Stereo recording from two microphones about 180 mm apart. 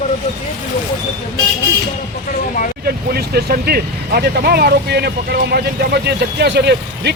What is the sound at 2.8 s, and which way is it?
Speech, 60° right (ahead or behind).